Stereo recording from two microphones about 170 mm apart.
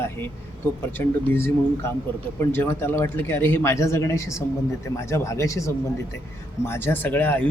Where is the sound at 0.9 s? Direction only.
10° left (ahead or behind).